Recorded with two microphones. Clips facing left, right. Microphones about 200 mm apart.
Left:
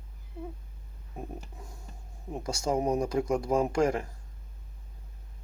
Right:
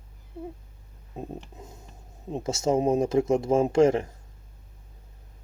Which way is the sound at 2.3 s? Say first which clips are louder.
Right 5 dB; 25° right (ahead or behind).